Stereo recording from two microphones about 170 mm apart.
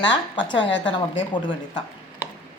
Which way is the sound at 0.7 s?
90° left.